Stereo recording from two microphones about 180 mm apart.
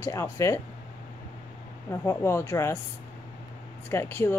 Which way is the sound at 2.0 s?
15° left (ahead or behind).